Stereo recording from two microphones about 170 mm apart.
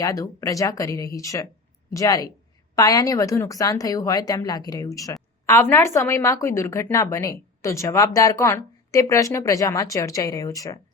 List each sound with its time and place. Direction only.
0.0 s a woman's voice: 20° left (ahead or behind)